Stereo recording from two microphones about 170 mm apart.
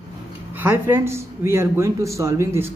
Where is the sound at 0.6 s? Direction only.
10° right (ahead or behind).